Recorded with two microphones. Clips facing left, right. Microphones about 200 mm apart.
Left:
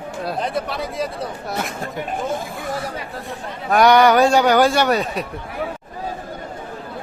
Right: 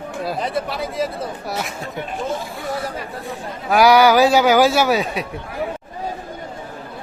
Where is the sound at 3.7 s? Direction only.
Centre (ahead or behind).